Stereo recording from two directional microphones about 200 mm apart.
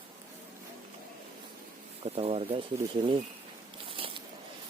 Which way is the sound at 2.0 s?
30° right (ahead or behind).